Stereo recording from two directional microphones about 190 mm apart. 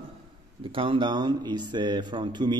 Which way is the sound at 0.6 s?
30° right (ahead or behind).